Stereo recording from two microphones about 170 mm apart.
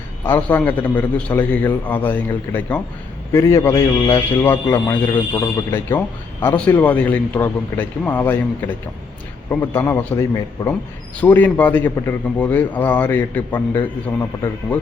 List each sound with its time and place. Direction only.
0.3 s a man's voice: 10° left (ahead or behind); by 5.6 s 25° left (ahead or behind)
6.4 s a man's voice: 10° left (ahead or behind)